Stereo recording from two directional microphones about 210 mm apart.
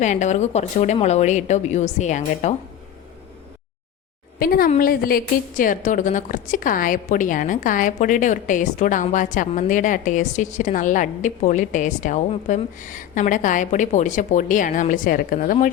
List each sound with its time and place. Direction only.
0.0 s a woman's voice: 35° left (ahead or behind)
4.4 s a woman's voice: 45° left (ahead or behind)